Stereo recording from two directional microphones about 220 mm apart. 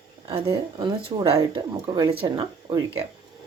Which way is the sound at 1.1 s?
25° right (ahead or behind).